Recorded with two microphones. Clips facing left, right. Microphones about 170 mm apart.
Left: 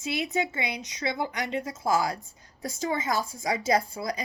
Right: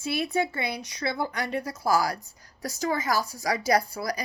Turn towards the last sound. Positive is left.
turn(degrees=20)  # may be behind; listen again after turning